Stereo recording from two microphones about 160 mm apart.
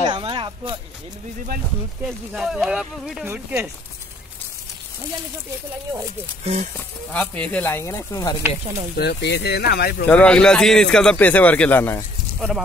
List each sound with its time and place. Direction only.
0.0 s a sound: 30° right (ahead or behind)
2.0 s speech: 5° right (ahead or behind)
6.4 s speech: 45° right (ahead or behind)
7.1 s a man's voice: 10° left (ahead or behind)
8.9 s speech: 90° left
10.0 s a man's voice: 10° left (ahead or behind)
12.4 s speech: centre (ahead or behind)